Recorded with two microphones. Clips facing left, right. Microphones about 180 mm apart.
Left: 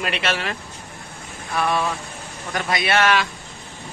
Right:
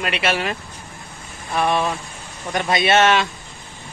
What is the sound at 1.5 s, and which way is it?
A man's voice, 20° right (ahead or behind).